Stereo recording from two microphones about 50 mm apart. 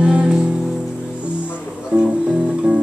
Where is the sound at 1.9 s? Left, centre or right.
Right.